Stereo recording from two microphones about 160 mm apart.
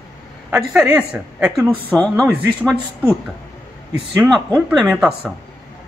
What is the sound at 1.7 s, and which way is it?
Speech, 10° left (ahead or behind).